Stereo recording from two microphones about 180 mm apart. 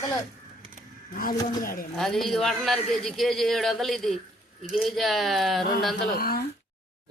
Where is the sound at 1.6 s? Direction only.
50° left (ahead or behind).